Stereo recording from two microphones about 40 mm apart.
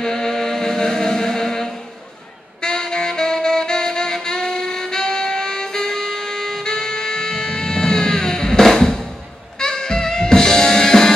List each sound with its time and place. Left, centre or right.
0.0 s mantra: centre
2.6 s saxophone: centre
9.6 s music: centre